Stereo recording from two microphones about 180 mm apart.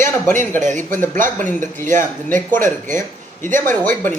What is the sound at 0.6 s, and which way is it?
Speech, 45° right (ahead or behind).